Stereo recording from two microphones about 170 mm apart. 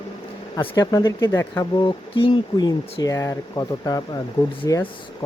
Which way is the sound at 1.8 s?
30° left (ahead or behind).